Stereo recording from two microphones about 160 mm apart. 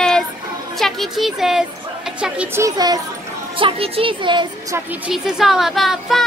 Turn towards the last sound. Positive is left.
turn(degrees=0)  # may be behind; listen again after turning